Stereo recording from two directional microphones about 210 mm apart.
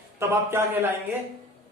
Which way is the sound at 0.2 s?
10° right (ahead or behind).